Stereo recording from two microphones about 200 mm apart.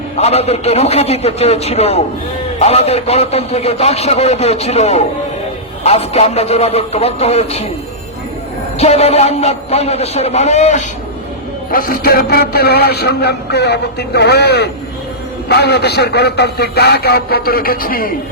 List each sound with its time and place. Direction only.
0.2 s a man's voice: 30° left (ahead or behind)
8.8 s a man's voice: 30° left (ahead or behind)
11.7 s speech: 45° left (ahead or behind)